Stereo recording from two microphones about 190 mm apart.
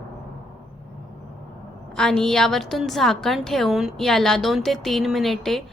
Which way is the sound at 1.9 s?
5° left (ahead or behind).